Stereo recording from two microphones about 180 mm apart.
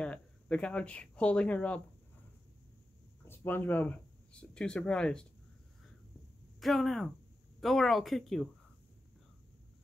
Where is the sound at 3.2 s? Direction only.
15° left (ahead or behind).